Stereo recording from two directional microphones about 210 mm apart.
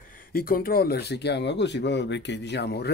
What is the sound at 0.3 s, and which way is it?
Speech, 45° left (ahead or behind).